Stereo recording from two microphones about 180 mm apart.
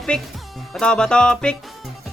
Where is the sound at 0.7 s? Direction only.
5° left (ahead or behind).